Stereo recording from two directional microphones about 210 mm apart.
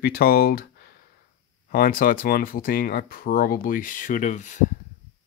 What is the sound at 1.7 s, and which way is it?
Speech, 45° left (ahead or behind).